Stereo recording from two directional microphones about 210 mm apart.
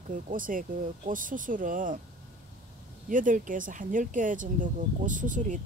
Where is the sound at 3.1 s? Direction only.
40° right (ahead or behind).